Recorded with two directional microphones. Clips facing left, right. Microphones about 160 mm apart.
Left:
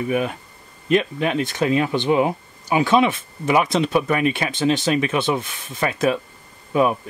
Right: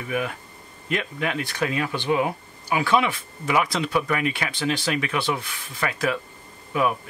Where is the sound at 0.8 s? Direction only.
25° left (ahead or behind).